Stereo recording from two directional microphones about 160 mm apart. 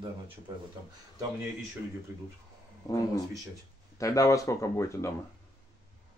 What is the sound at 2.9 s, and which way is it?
Speech, 20° left (ahead or behind).